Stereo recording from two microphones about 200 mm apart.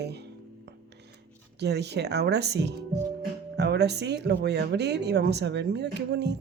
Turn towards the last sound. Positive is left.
turn(degrees=-55)  # may be behind; listen again after turning